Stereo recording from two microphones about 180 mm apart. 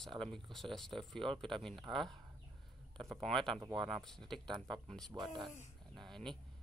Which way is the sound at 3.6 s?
25° right (ahead or behind).